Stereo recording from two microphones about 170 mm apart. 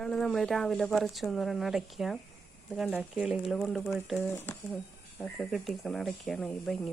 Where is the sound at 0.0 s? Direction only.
5° left (ahead or behind).